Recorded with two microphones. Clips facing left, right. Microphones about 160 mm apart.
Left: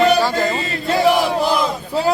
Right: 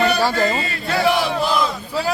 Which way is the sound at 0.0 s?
20° left (ahead or behind).